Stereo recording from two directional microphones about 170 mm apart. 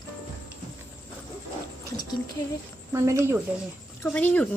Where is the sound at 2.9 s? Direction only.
15° right (ahead or behind).